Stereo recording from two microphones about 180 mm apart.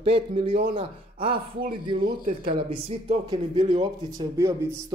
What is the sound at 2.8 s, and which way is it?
Speech, 30° right (ahead or behind).